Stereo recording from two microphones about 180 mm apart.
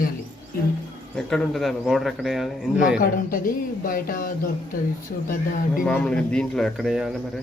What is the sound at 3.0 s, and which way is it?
Speech, 50° left (ahead or behind).